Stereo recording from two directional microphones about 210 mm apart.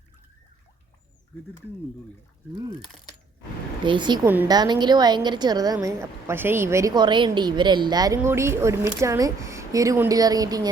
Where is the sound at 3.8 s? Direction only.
20° right (ahead or behind).